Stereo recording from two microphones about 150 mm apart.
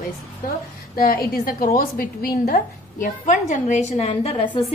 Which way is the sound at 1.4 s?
70° left (ahead or behind).